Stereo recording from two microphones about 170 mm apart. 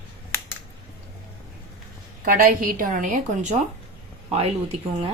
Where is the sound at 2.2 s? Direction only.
55° right (ahead or behind).